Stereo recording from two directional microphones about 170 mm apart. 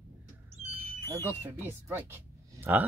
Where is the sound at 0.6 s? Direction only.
40° right (ahead or behind).